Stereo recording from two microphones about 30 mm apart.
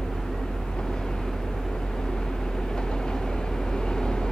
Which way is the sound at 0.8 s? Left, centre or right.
Left.